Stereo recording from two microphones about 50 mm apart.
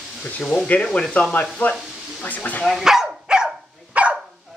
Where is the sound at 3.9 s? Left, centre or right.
Right.